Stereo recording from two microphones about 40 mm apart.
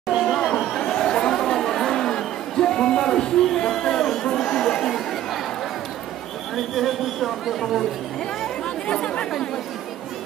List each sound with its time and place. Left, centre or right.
0.2 s chatter: centre
4.2 s crowd: centre
4.5 s chatter: centre
6.5 s a man's voice: centre
8.8 s chatter: left